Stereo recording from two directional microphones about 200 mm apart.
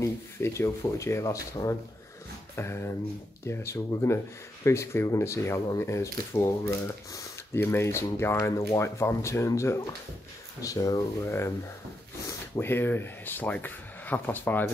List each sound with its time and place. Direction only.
0.0 s speech: 15° left (ahead or behind)